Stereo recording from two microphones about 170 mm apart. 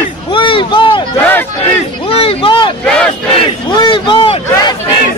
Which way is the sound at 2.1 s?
35° left (ahead or behind).